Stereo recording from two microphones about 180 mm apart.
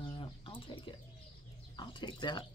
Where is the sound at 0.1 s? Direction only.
30° left (ahead or behind).